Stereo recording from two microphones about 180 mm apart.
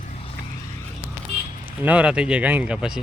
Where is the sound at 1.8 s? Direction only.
5° right (ahead or behind).